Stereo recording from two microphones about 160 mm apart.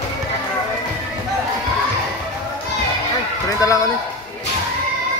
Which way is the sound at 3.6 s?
20° left (ahead or behind).